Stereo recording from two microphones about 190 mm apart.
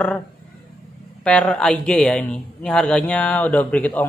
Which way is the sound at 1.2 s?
5° left (ahead or behind).